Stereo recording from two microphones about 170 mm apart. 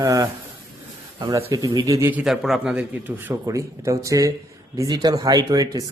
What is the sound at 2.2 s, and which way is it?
A man's voice, centre (ahead or behind).